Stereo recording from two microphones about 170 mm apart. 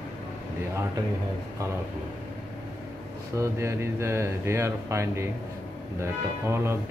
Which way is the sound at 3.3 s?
15° right (ahead or behind).